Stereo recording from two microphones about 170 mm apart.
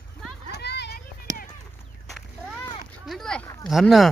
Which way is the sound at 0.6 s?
80° left.